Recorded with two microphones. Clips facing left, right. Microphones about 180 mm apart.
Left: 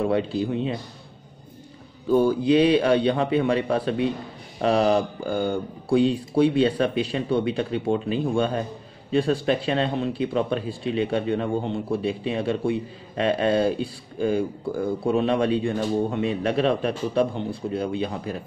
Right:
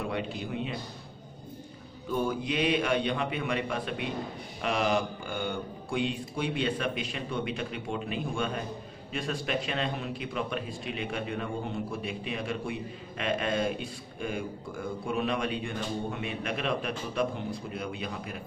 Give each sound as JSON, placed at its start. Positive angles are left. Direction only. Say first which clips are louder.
{"t": 0.0, "sound": "speech", "louder": "left 10 dB", "side_deg": 30}
{"t": 2.0, "sound": "speech", "louder": "left 11 dB", "side_deg": 30}